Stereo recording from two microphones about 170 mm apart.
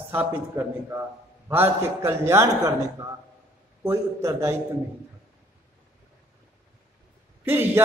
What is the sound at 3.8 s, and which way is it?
Speech, 15° right (ahead or behind).